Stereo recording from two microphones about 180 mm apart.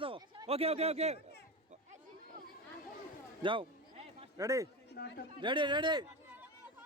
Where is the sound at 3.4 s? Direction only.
30° right (ahead or behind).